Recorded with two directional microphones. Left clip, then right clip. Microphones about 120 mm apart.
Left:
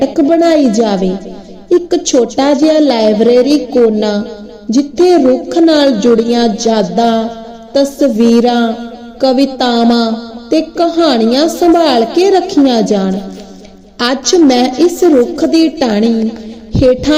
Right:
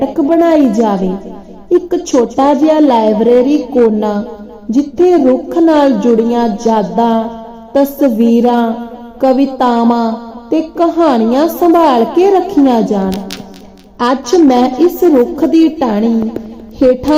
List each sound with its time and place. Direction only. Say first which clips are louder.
0.3 s a woman's voice: right 1 dB; 10° left (ahead or behind)
7.7 s a woman's voice: even; 10° left (ahead or behind)
14.3 s a woman's voice: left 1 dB; 15° left (ahead or behind)